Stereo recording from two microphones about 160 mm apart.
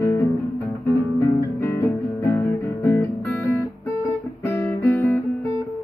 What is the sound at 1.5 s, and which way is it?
Guitar, 15° left (ahead or behind).